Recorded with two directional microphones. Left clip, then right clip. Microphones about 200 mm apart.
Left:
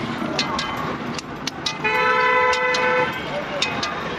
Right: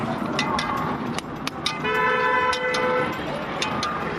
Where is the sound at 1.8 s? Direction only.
20° right (ahead or behind).